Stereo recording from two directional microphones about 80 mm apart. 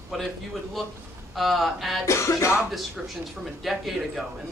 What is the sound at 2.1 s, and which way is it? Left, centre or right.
Music, left.